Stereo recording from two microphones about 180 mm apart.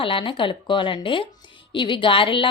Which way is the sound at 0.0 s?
30° left (ahead or behind).